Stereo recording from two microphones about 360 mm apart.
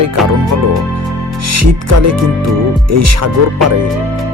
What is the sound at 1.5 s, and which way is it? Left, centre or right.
Speech, right.